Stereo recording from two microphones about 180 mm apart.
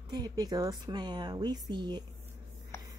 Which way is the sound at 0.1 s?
20° right (ahead or behind).